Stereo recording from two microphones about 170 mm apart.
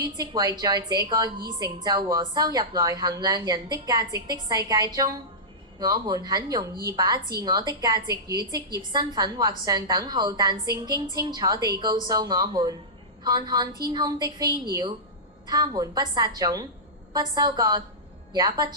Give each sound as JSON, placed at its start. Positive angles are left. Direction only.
{"t": 0.0, "sound": "a woman's voice", "side_deg": -25}